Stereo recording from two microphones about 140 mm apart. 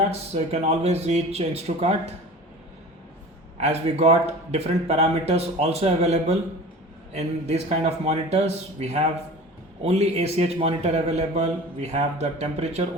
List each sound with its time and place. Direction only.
0.1 s a man's voice: 50° right (ahead or behind)
3.6 s a man's voice: 55° right (ahead or behind)